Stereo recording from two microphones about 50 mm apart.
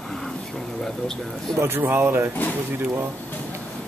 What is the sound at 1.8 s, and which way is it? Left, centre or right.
Speech, right.